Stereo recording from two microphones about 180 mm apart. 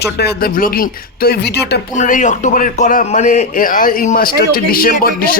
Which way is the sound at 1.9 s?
45° left (ahead or behind).